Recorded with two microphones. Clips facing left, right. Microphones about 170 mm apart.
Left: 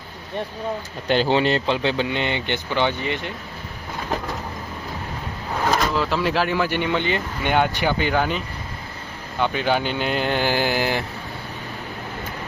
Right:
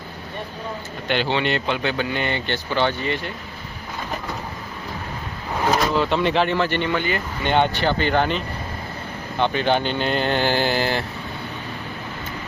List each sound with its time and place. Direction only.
1.0 s speech: 35° left (ahead or behind); by 3.3 s 15° left (ahead or behind)
5.9 s speech: centre (ahead or behind)
9.4 s speech: 5° left (ahead or behind)